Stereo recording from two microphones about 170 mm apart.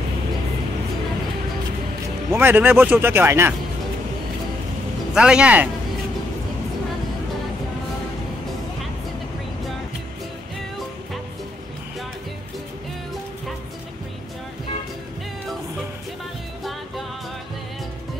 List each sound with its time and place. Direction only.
2.3 s speech: 10° right (ahead or behind)
5.1 s speech: 5° right (ahead or behind)